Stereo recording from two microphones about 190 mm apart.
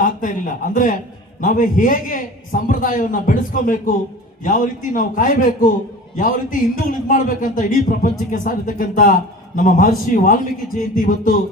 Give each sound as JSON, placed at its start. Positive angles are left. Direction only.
{"t": 0.0, "sound": "a man's voice", "side_deg": 45}